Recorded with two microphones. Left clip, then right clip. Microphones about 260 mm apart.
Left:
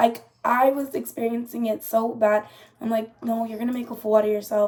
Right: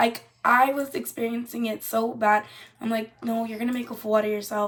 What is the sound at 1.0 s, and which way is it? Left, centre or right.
Speech, centre.